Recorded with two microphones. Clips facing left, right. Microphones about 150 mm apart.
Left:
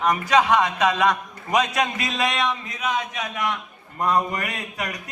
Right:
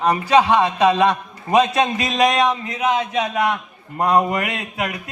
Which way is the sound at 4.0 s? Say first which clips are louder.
Right 5 dB; 65° right (ahead or behind).